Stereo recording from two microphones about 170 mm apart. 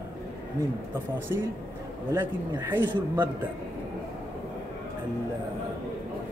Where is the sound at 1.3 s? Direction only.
15° right (ahead or behind).